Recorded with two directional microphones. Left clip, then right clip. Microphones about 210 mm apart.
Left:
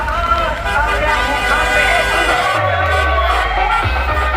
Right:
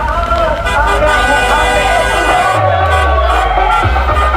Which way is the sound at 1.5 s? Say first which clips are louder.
Right 3 dB; 20° right (ahead or behind).